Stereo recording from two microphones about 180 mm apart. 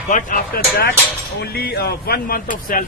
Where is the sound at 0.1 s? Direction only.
50° left (ahead or behind).